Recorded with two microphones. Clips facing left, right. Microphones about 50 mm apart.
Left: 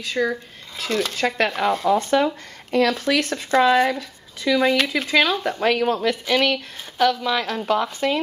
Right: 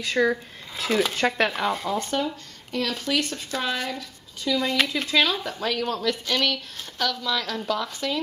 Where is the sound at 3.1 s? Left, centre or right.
Left.